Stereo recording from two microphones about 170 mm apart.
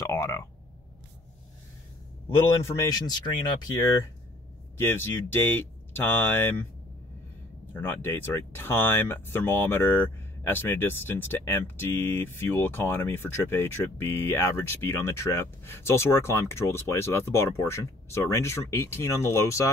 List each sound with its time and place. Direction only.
0.0 s a sound: 15° left (ahead or behind)
2.3 s speech: 15° left (ahead or behind)
4.7 s speech: 15° left (ahead or behind)
7.8 s speech: 15° left (ahead or behind)